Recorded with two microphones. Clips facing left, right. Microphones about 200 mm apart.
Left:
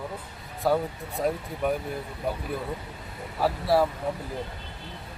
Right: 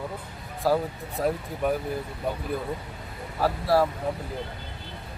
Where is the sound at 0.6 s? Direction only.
Centre (ahead or behind).